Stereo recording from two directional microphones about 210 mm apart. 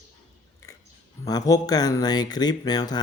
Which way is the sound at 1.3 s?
15° left (ahead or behind).